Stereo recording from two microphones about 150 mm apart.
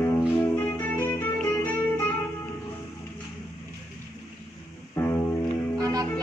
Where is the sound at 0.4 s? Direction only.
15° left (ahead or behind).